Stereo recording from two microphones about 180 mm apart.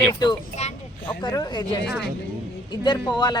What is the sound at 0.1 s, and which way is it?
Speech, 25° left (ahead or behind).